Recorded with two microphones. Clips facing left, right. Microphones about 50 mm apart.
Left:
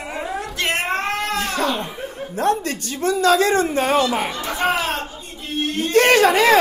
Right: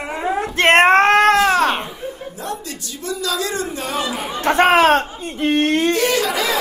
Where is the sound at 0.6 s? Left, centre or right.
Right.